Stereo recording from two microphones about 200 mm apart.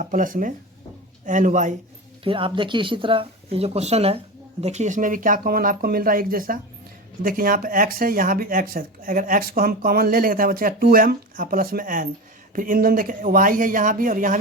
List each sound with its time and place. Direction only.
0.0 s a man's voice: 45° right (ahead or behind)
2.2 s speech: 25° right (ahead or behind); by 14.3 s 40° right (ahead or behind)